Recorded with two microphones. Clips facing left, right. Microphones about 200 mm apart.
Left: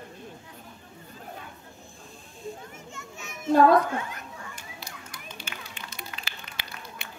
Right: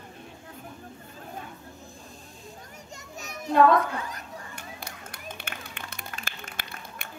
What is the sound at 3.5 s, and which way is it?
Female singing, 35° left (ahead or behind).